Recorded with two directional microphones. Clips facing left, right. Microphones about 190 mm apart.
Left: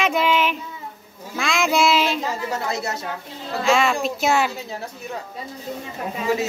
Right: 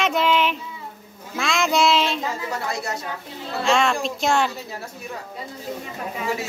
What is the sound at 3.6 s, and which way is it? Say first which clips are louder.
Speech: left 1 dB; centre (ahead or behind).